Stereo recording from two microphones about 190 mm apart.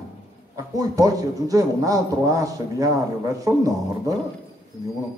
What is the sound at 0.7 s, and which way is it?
Speech, 15° right (ahead or behind).